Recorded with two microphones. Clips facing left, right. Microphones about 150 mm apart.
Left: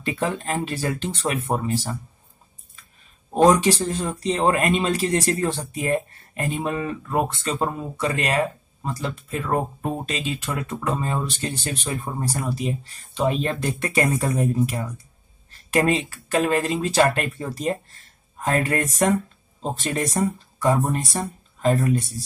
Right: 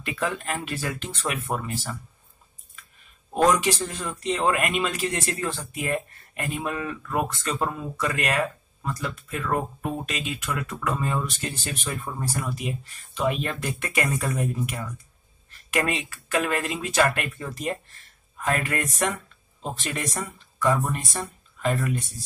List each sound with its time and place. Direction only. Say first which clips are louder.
0.0 s speech: left 3 dB; 35° left (ahead or behind)
3.3 s speech: left 5 dB; 30° left (ahead or behind)